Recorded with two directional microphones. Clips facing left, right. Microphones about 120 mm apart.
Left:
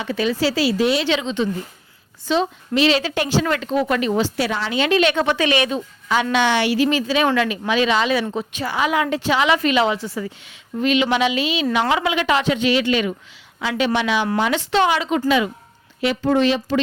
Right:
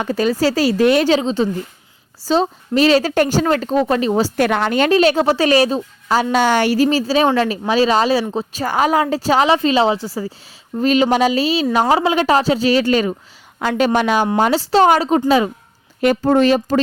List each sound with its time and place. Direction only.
0.0 s a woman's voice: 40° right (ahead or behind)
4.4 s a woman's voice: 55° right (ahead or behind); by 8.6 s 30° right (ahead or behind)
8.6 s a woman's voice: 45° right (ahead or behind)